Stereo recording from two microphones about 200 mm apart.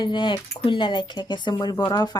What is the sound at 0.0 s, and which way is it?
Speech, 25° left (ahead or behind).